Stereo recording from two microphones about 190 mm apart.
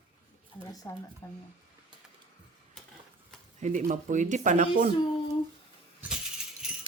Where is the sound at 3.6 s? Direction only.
40° right (ahead or behind).